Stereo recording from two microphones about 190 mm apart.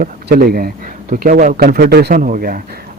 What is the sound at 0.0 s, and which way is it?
Speech, 50° right (ahead or behind).